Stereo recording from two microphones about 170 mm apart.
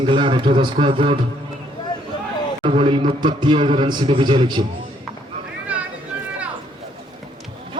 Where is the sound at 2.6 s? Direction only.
30° right (ahead or behind).